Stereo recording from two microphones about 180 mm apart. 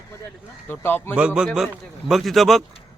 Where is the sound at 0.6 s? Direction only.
10° left (ahead or behind).